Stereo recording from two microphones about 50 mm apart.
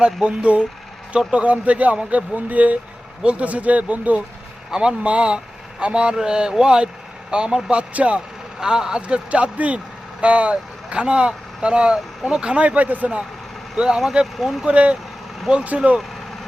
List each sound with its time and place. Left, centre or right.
0.0 s speech: centre
4.7 s speech: centre
8.6 s speech: centre; by 13.1 s right
13.7 s speech: centre
14.7 s speech: right